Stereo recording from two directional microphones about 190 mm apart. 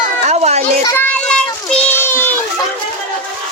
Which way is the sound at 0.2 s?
35° right (ahead or behind).